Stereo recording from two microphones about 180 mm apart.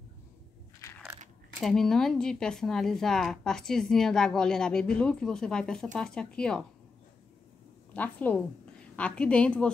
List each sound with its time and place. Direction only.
0.7 s crushing: 15° left (ahead or behind)
1.6 s speech: centre (ahead or behind)
7.9 s a woman's voice: 10° left (ahead or behind)